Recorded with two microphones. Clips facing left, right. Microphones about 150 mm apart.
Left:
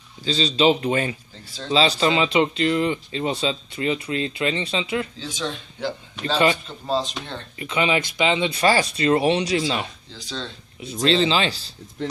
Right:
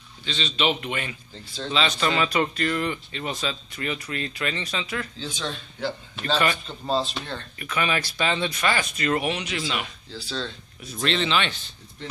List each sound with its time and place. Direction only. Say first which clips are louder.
0.2 s speech: left 7 dB; 35° left (ahead or behind)
5.2 s speech: left 3 dB; 15° left (ahead or behind)
8.5 s speech: left 6 dB; 30° left (ahead or behind)
10.2 s speech: even; 20° left (ahead or behind); by 11.7 s 35° left (ahead or behind)